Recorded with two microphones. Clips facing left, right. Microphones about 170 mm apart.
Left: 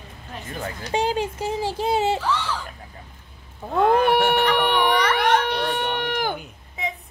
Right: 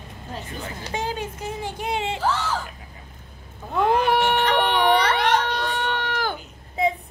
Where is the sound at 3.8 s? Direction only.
55° left (ahead or behind).